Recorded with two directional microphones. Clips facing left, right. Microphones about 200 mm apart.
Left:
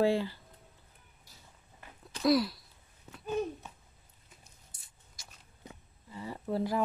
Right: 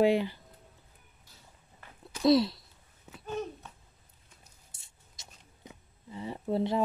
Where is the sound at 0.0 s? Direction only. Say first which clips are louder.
Right 3 dB; 20° right (ahead or behind).